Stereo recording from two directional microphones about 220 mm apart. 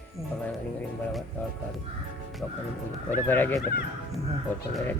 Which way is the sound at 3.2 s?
10° left (ahead or behind).